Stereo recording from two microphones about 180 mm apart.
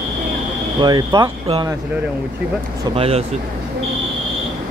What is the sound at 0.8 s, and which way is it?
Speech, 20° right (ahead or behind).